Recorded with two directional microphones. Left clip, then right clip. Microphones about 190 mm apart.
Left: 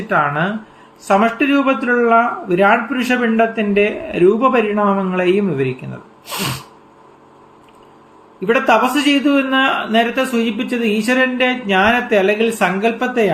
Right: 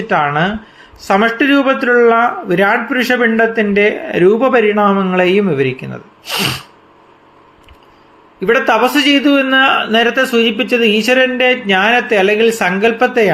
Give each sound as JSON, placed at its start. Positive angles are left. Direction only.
{"t": 0.1, "sound": "speech", "side_deg": -15}
{"t": 8.4, "sound": "speech", "side_deg": -20}